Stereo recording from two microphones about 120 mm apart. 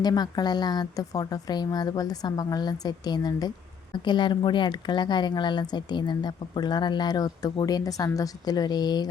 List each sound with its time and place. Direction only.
0.0 s a woman's voice: 35° left (ahead or behind)